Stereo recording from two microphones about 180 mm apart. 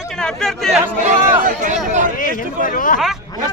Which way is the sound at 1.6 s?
45° right (ahead or behind).